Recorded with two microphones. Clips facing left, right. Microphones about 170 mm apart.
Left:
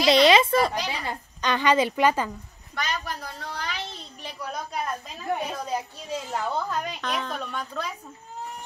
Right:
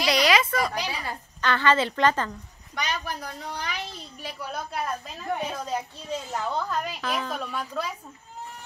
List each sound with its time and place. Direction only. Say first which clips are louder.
0.0 s a sound: left 5 dB; 25° left (ahead or behind)
0.8 s a woman's voice: left 2 dB; 15° left (ahead or behind)
2.7 s a woman's voice: even; 15° right (ahead or behind)